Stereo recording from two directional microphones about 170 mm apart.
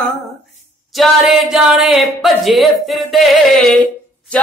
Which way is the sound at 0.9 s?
Centre (ahead or behind).